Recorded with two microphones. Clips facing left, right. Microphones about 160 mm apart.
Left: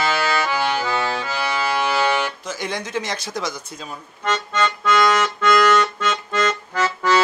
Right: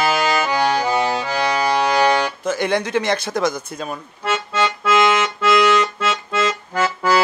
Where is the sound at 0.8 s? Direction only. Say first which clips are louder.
Right 4 dB; 20° right (ahead or behind).